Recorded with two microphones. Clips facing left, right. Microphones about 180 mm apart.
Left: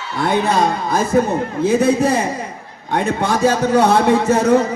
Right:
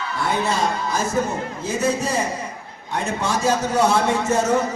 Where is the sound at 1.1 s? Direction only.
70° left (ahead or behind).